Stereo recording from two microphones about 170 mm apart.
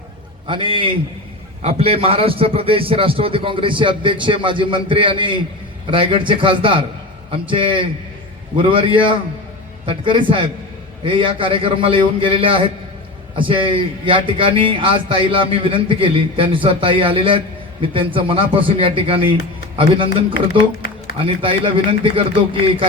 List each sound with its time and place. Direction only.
0.4 s a man's voice: 30° right (ahead or behind)